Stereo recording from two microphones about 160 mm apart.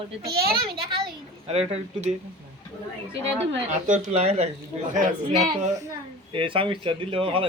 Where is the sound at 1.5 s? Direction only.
40° right (ahead or behind).